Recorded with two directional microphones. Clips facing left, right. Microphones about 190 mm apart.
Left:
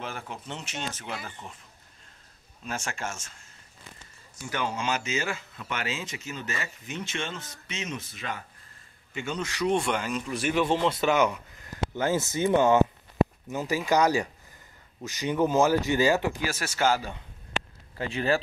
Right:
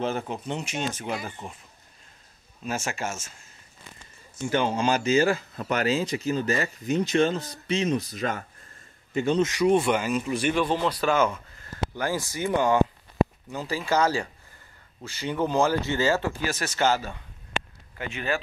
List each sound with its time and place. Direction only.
0.0 s speech: 25° right (ahead or behind)
2.6 s speech: 5° right (ahead or behind)
4.4 s a man's voice: 25° right (ahead or behind)
9.4 s speech: 15° right (ahead or behind)
9.7 s speech: 5° right (ahead or behind)
10.4 s speech: 10° left (ahead or behind)
10.9 s speech: 20° left (ahead or behind)
17.9 s speech: 35° left (ahead or behind)